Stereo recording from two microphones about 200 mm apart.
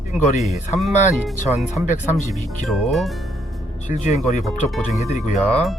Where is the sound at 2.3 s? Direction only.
Centre (ahead or behind).